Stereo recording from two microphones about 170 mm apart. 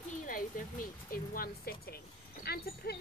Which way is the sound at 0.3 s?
55° left (ahead or behind).